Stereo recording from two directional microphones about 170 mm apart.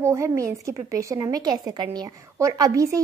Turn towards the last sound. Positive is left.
turn(degrees=-20)  # may be behind; listen again after turning